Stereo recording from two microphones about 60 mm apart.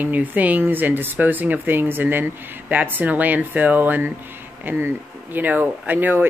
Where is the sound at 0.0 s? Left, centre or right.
Right.